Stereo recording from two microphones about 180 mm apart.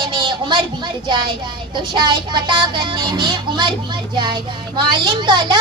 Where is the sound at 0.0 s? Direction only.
25° right (ahead or behind).